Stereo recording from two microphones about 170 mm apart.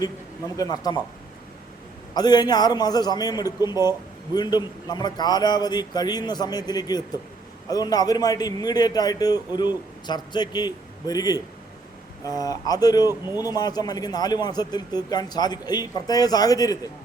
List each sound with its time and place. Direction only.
0.0 s a man's voice: 20° left (ahead or behind)
2.1 s a man's voice: 25° left (ahead or behind)
13.1 s speech: 15° right (ahead or behind)
13.4 s a man's voice: 25° left (ahead or behind)